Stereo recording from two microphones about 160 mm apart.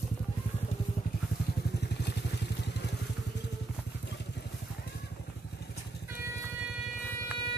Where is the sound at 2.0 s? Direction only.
90° left.